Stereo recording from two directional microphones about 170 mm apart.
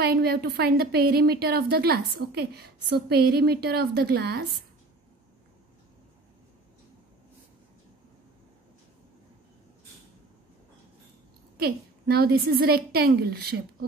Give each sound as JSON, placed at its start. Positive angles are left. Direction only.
{"t": 0.0, "sound": "a woman's voice", "side_deg": -65}
{"t": 11.5, "sound": "a woman's voice", "side_deg": -65}